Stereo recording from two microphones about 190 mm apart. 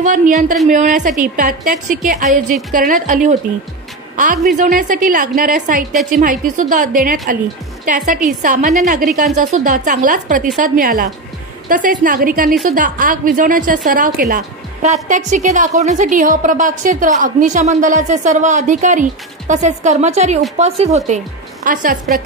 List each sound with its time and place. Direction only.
0.0 s a woman's voice: 40° right (ahead or behind)
4.5 s a woman's voice: 45° right (ahead or behind)
21.7 s a woman's voice: 45° right (ahead or behind)